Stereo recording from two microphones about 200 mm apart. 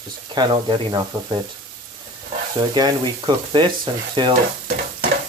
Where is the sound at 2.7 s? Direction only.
20° right (ahead or behind).